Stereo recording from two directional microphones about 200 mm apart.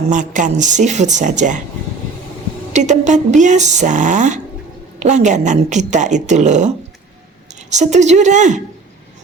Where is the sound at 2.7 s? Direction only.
35° right (ahead or behind).